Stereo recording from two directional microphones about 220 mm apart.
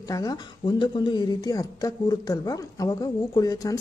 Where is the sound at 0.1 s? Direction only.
20° left (ahead or behind).